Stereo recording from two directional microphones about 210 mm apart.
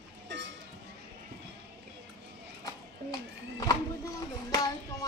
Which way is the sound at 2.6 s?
20° left (ahead or behind).